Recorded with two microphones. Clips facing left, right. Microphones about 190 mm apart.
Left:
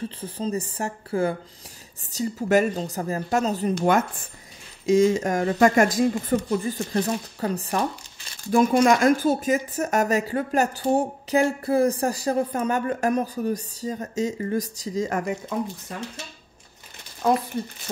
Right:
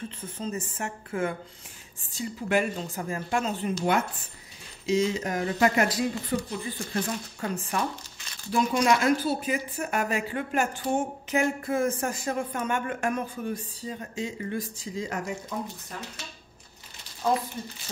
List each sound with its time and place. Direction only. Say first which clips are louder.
0.2 s speech: left 5 dB; 35° left (ahead or behind)
3.7 s speech: left 4 dB; 50° left (ahead or behind)
8.5 s speech: left 6 dB; 50° left (ahead or behind)